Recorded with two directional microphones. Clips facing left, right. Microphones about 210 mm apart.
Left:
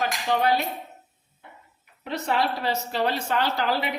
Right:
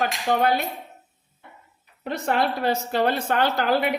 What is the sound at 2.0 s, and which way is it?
A man's voice, 50° right (ahead or behind).